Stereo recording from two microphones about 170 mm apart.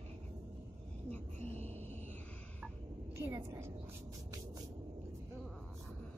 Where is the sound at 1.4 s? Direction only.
40° right (ahead or behind).